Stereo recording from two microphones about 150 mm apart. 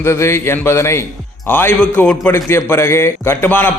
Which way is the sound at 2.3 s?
15° left (ahead or behind).